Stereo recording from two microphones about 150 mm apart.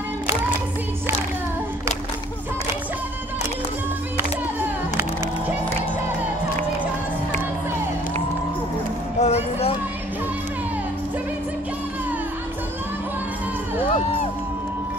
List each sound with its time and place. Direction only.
9.2 s music: 45° left (ahead or behind)